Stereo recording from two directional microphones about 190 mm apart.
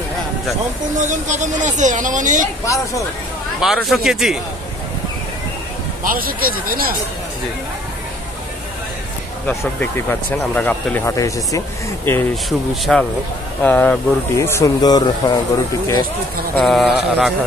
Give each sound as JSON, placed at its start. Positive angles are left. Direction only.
{"t": 0.9, "sound": "speech", "side_deg": -40}
{"t": 3.6, "sound": "speech", "side_deg": 0}
{"t": 6.0, "sound": "speech", "side_deg": -50}
{"t": 9.5, "sound": "speech", "side_deg": 5}
{"t": 12.4, "sound": "speech", "side_deg": 0}
{"t": 16.5, "sound": "speech", "side_deg": 0}